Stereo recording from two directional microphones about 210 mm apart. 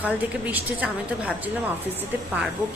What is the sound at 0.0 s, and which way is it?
A woman's voice, 5° right (ahead or behind).